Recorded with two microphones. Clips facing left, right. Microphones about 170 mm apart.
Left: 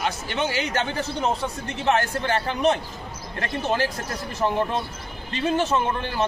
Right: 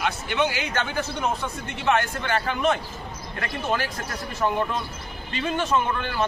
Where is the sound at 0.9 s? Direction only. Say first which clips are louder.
Left 1 dB; 35° left (ahead or behind).